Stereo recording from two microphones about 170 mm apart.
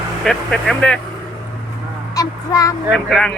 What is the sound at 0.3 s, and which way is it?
Speech, 5° left (ahead or behind).